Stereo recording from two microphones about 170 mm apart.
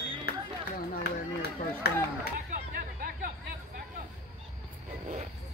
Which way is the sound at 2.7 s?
55° right (ahead or behind).